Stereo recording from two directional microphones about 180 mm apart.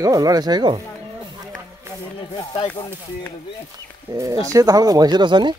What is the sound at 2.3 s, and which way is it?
Speech, 15° left (ahead or behind).